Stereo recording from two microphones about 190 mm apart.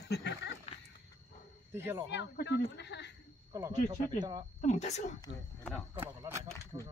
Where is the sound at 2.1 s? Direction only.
65° left (ahead or behind).